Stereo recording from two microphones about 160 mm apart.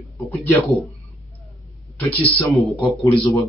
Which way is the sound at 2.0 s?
10° left (ahead or behind).